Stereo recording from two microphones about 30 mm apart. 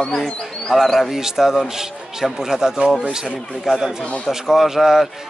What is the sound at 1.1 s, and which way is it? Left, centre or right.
Speech, centre.